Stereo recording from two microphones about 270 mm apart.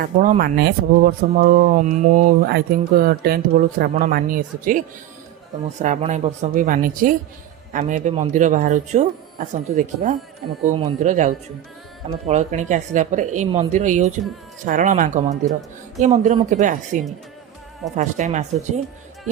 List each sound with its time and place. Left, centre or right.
0.0 s speech: right
5.8 s speech: right